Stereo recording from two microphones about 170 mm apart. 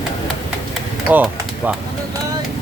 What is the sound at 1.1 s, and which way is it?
Speech, 10° right (ahead or behind).